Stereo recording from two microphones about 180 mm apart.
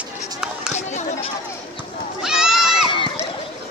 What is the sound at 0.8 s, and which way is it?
Chatter, 40° left (ahead or behind).